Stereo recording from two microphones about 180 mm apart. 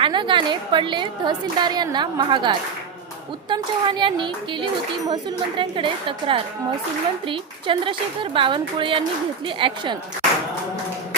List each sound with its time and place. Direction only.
0.0 s speech: 25° right (ahead or behind)